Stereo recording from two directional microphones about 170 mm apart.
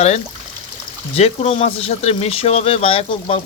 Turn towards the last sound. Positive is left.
turn(degrees=35)  # may be behind; listen again after turning